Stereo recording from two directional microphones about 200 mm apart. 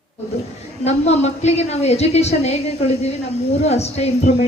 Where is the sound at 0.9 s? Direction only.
35° left (ahead or behind).